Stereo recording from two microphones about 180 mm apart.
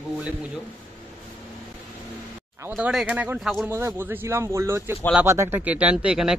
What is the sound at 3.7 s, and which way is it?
Speech, 15° right (ahead or behind).